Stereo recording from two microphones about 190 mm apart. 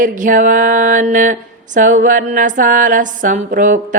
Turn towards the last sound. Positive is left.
turn(degrees=-45)  # may be behind; listen again after turning